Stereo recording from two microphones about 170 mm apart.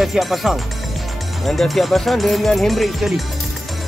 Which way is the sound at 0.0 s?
Centre (ahead or behind).